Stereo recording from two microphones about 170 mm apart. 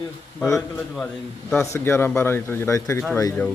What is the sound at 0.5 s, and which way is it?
A man's voice, 5° left (ahead or behind).